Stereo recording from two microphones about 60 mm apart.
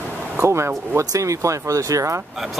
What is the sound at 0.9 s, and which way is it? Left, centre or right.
Speech, right.